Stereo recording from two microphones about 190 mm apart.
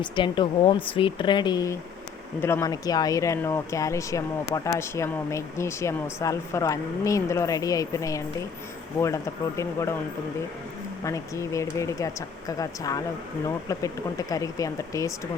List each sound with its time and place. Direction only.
0.0 s speech: 25° left (ahead or behind)
11.0 s speech: 15° left (ahead or behind)